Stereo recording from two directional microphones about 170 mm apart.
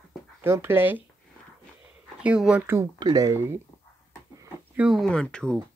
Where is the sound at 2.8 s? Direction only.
25° right (ahead or behind).